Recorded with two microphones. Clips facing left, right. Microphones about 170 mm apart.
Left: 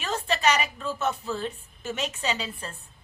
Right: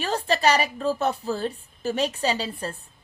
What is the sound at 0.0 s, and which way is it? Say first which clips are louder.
A woman's voice: right 3 dB; 35° right (ahead or behind).